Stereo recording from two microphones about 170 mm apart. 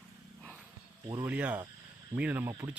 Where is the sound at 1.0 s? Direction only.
20° right (ahead or behind).